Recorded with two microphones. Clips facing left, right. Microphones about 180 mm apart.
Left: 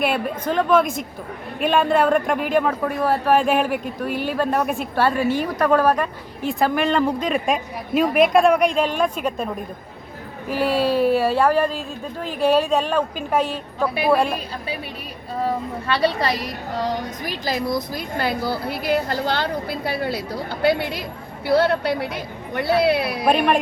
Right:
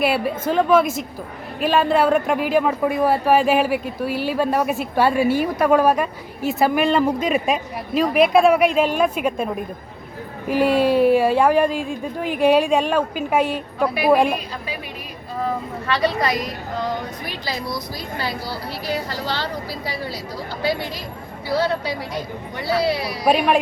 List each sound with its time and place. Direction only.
0.0 s a man's voice: 5° right (ahead or behind)
10.5 s a woman's voice: 15° right (ahead or behind)
15.4 s speech: 30° left (ahead or behind); by 23.2 s 60° left (ahead or behind)